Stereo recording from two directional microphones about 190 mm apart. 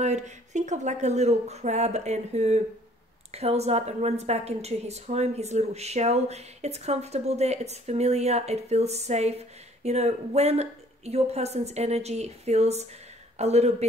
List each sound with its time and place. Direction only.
0.0 s a woman's voice: 40° right (ahead or behind)